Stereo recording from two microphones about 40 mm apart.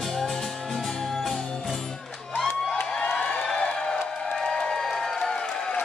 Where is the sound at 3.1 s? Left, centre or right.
Left.